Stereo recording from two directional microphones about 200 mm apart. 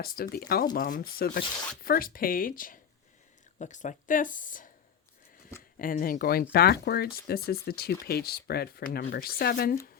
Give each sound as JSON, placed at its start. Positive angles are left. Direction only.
{"t": 0.0, "sound": "speech", "side_deg": 50}
{"t": 5.8, "sound": "speech", "side_deg": 45}